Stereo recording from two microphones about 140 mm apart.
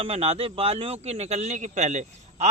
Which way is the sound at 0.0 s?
45° right (ahead or behind).